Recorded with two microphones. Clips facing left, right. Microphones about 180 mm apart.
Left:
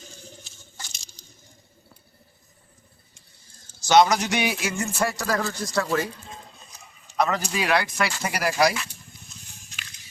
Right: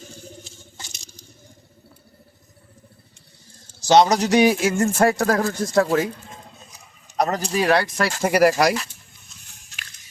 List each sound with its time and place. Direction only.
3.8 s a man's voice: 35° right (ahead or behind)
7.2 s a man's voice: 40° right (ahead or behind)